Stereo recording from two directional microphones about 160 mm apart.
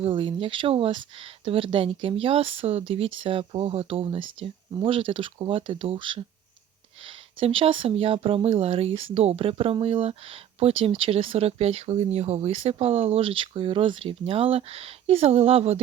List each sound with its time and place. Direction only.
0.0 s speech: 35° right (ahead or behind)